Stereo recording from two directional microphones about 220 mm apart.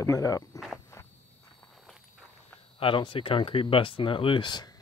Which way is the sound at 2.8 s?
20° left (ahead or behind).